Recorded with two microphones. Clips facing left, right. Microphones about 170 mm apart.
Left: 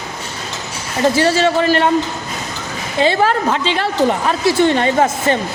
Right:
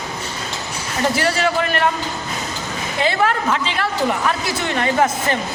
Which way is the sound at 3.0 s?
30° left (ahead or behind).